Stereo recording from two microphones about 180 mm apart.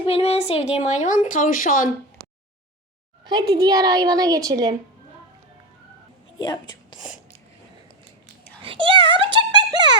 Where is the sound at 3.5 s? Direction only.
20° right (ahead or behind).